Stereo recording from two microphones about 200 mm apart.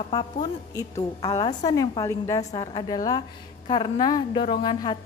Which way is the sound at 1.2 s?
20° left (ahead or behind).